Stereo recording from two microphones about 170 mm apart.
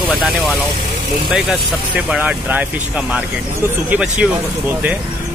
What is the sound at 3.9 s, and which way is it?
Speech, 5° right (ahead or behind).